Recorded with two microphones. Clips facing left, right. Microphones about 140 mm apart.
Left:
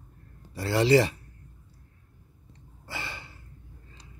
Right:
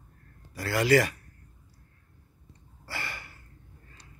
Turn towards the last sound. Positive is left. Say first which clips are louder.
# even
turn(degrees=20)  # may be behind; listen again after turning